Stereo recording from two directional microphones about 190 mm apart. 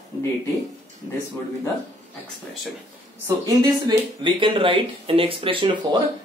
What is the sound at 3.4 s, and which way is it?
Speech, 20° right (ahead or behind).